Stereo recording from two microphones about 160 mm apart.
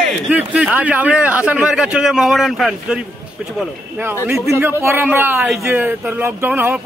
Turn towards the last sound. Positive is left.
turn(degrees=-10)  # may be behind; listen again after turning